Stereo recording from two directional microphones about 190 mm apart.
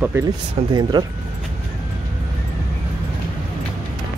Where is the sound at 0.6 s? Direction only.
30° right (ahead or behind).